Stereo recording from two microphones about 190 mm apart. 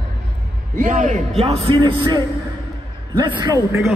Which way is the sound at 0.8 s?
40° right (ahead or behind).